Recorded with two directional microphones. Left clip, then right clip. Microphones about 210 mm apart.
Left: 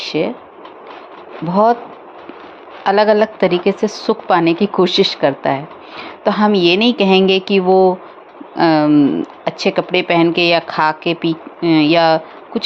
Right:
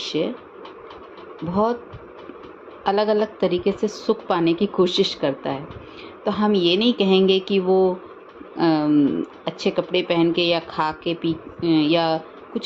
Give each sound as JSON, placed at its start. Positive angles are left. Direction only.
{"t": 0.0, "sound": "speech", "side_deg": 20}
{"t": 1.5, "sound": "a woman's voice", "side_deg": 20}
{"t": 2.8, "sound": "a woman's voice", "side_deg": 25}